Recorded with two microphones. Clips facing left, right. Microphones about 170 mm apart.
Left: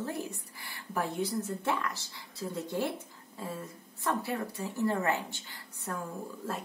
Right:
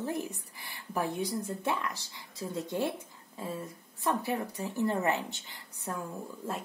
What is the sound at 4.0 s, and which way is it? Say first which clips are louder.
Speech: right 1 dB; 20° right (ahead or behind).